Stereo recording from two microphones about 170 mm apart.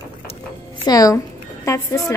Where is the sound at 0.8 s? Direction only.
20° left (ahead or behind).